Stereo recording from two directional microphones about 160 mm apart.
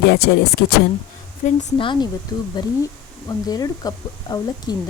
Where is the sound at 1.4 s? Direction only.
50° left (ahead or behind).